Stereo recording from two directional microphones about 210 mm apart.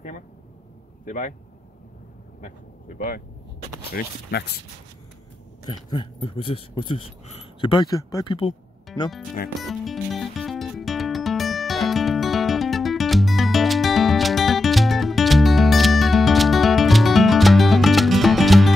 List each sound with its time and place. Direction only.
1.0 s speech: 35° left (ahead or behind)
2.4 s speech: 40° left (ahead or behind)
6.1 s speech: 25° left (ahead or behind)
9.6 s music: centre (ahead or behind)